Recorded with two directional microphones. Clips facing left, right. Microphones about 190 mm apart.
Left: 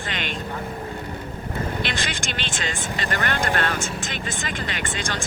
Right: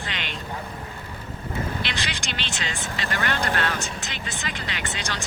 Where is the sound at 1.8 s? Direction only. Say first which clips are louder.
Left 3 dB; 50° left (ahead or behind).